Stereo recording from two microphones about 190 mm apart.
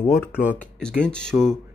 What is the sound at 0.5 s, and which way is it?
Speech, 5° left (ahead or behind).